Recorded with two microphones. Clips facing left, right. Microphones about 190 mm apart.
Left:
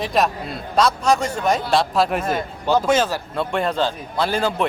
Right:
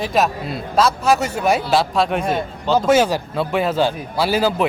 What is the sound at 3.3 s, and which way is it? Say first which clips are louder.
A man's voice: right 3 dB; centre (ahead or behind).